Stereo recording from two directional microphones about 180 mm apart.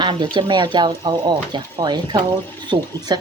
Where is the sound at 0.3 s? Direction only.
25° right (ahead or behind).